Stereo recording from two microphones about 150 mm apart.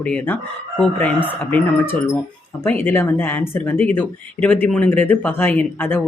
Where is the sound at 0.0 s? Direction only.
10° left (ahead or behind).